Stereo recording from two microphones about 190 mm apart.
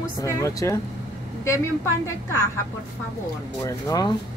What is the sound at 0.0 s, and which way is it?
Speech, 15° left (ahead or behind).